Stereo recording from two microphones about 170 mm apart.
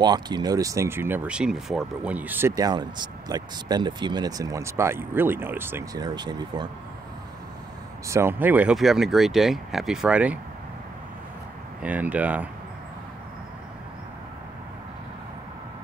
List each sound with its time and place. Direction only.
0.0 s speech: 25° right (ahead or behind)
8.1 s speech: 15° right (ahead or behind)
11.8 s speech: 10° right (ahead or behind)